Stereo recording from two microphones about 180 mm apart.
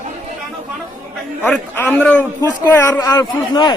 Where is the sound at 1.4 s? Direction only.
10° left (ahead or behind).